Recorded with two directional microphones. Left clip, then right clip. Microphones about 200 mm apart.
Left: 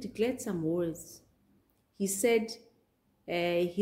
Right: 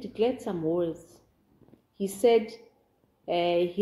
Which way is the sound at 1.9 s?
25° left (ahead or behind).